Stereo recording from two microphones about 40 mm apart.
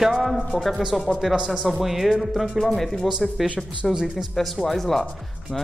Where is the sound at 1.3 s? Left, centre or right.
Right.